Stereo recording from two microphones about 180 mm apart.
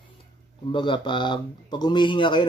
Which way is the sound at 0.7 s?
25° left (ahead or behind).